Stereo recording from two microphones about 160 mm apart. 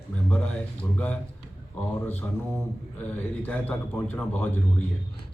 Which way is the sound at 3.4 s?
10° left (ahead or behind).